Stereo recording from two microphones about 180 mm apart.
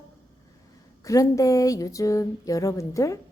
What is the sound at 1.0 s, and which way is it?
A woman's voice, 20° left (ahead or behind).